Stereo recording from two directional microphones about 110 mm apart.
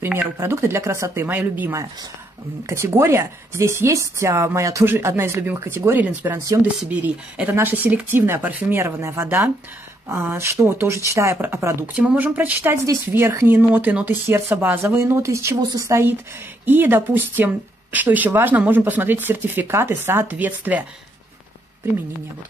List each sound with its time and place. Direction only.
0.0 s speech: 20° right (ahead or behind)
6.8 s speech: 10° right (ahead or behind)
11.8 s speech: 10° right (ahead or behind)